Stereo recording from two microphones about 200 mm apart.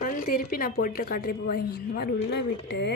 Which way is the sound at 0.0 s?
45° left (ahead or behind).